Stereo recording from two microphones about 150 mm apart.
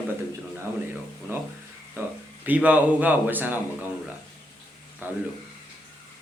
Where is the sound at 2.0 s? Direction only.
15° right (ahead or behind).